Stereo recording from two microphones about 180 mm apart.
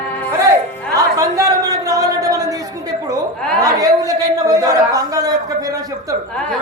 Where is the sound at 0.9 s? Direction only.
20° right (ahead or behind).